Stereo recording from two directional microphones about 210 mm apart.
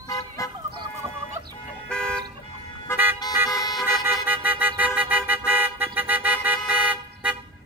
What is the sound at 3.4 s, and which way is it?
Vehicle, 20° left (ahead or behind).